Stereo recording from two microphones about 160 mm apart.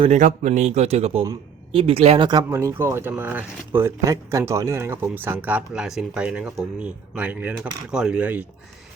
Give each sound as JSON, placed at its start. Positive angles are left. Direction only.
{"t": 0.0, "sound": "speech", "side_deg": -50}